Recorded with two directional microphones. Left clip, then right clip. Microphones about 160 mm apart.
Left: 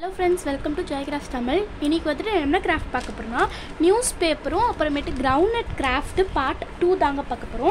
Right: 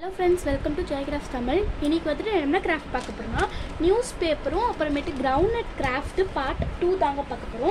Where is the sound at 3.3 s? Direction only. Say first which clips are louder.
Left 5 dB; 45° left (ahead or behind); by 5.3 s 20° left (ahead or behind).